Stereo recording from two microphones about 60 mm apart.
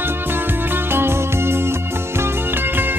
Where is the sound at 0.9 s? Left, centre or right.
Right.